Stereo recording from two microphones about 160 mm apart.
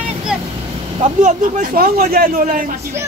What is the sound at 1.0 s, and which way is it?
A man's voice, 50° right (ahead or behind).